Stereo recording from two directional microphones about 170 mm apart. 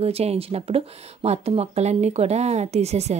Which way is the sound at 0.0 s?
35° right (ahead or behind).